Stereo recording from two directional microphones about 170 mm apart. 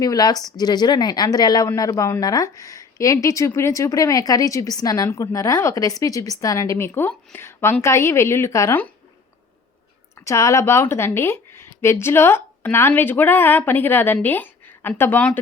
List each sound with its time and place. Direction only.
0.0 s speech: 25° left (ahead or behind)
10.2 s speech: 20° left (ahead or behind)